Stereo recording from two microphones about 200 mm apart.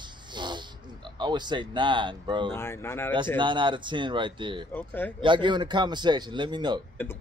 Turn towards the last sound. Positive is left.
turn(degrees=10)  # may be behind; listen again after turning